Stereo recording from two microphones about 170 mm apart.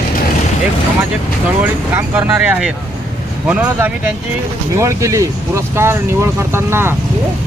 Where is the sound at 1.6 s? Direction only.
10° right (ahead or behind).